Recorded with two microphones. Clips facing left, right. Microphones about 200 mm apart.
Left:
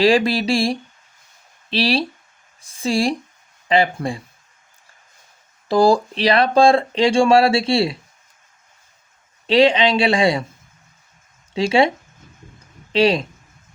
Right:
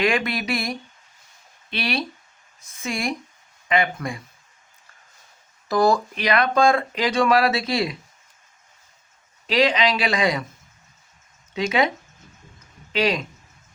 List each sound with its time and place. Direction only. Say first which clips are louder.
0.0 s speech: left 7 dB; 30° left (ahead or behind)
5.6 s speech: left 4 dB; 30° left (ahead or behind)
9.5 s speech: left 5 dB; 30° left (ahead or behind)
11.5 s speech: left 5 dB; 30° left (ahead or behind)
12.9 s speech: left 6 dB; 30° left (ahead or behind)